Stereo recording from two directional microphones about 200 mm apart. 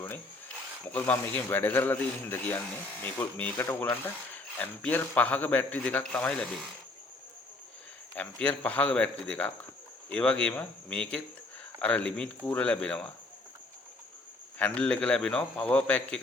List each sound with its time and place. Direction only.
0.9 s speech: 10° left (ahead or behind)
8.1 s speech: 5° left (ahead or behind)
14.6 s speech: 5° left (ahead or behind)